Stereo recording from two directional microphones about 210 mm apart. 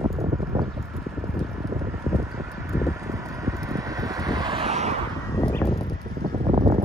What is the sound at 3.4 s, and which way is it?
Vehicle, 15° right (ahead or behind).